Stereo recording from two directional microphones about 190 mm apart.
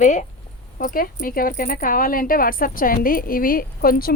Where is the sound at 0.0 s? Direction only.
40° left (ahead or behind).